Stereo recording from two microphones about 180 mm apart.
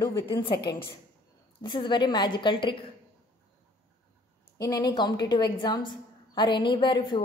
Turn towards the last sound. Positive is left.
turn(degrees=25)  # may be behind; listen again after turning